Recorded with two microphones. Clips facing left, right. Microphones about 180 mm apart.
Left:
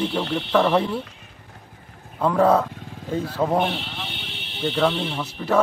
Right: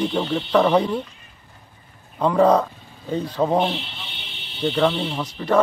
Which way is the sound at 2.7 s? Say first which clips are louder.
Left 8 dB; 90° left.